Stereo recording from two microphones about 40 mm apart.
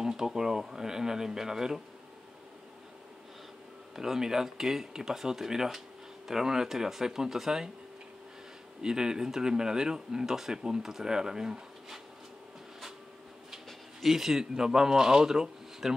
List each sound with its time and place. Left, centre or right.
0.0 s speech: centre
3.9 s speech: centre
8.8 s speech: centre
14.0 s speech: centre